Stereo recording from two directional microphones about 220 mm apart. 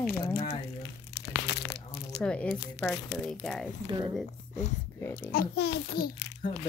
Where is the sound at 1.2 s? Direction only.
50° left (ahead or behind).